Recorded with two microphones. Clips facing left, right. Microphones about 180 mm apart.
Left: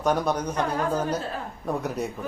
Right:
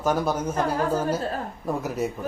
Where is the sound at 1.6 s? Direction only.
5° right (ahead or behind).